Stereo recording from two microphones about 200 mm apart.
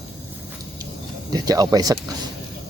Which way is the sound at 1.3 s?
20° right (ahead or behind).